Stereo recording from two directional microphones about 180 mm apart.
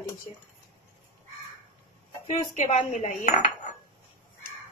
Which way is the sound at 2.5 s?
40° left (ahead or behind).